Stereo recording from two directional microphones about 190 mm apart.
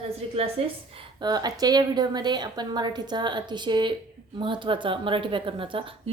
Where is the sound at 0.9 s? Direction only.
20° right (ahead or behind).